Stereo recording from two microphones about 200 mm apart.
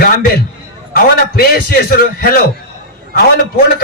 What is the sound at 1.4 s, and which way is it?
Speech, 50° left (ahead or behind).